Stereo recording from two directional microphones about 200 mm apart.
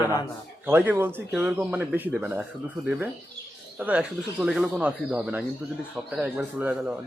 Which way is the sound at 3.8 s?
5° right (ahead or behind).